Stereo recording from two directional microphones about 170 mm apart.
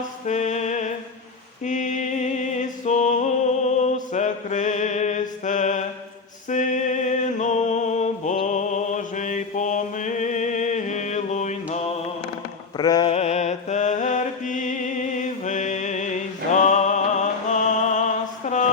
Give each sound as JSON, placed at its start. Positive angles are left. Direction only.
{"t": 0.3, "sound": "music", "side_deg": 45}
{"t": 3.8, "sound": "mantra", "side_deg": 45}
{"t": 6.5, "sound": "music", "side_deg": 45}
{"t": 12.7, "sound": "a sound", "side_deg": 20}
{"t": 13.1, "sound": "mantra", "side_deg": 40}